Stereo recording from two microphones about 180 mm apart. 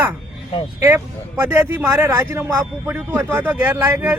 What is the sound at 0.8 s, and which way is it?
Speech, 15° right (ahead or behind).